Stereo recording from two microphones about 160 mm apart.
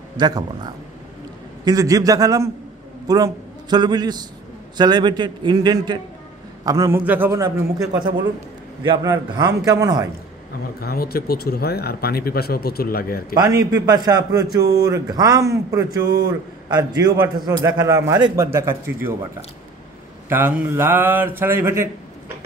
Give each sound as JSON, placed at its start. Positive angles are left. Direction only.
{"t": 0.2, "sound": "a man's voice", "side_deg": -25}
{"t": 8.8, "sound": "a man's voice", "side_deg": -30}
{"t": 9.1, "sound": "a man's voice", "side_deg": -20}
{"t": 10.8, "sound": "speech", "side_deg": 70}
{"t": 13.3, "sound": "a man's voice", "side_deg": -20}
{"t": 20.2, "sound": "speech", "side_deg": -15}